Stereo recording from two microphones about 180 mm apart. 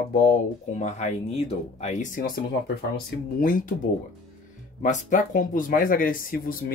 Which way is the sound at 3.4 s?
50° left (ahead or behind).